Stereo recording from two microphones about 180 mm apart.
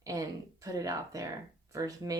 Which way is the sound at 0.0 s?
20° right (ahead or behind).